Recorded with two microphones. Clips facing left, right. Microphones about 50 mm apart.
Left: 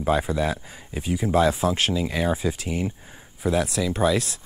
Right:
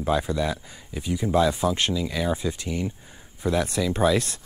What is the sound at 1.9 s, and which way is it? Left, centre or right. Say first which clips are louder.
Speech: left 2 dB; left.